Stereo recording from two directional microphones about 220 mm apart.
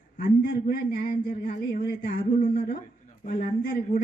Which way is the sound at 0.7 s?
40° left (ahead or behind).